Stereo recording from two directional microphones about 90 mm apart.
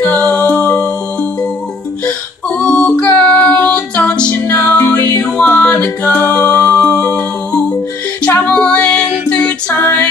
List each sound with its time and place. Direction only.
0.1 s music: 15° left (ahead or behind)
2.6 s music: 10° left (ahead or behind)
9.7 s music: 25° left (ahead or behind)